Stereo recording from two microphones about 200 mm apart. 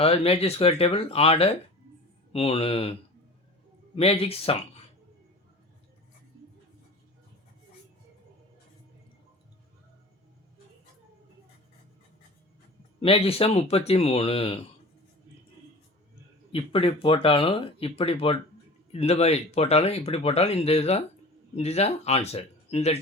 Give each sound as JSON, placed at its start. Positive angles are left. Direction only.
{"t": 0.0, "sound": "speech", "side_deg": 30}
{"t": 13.0, "sound": "speech", "side_deg": 30}
{"t": 16.5, "sound": "speech", "side_deg": 25}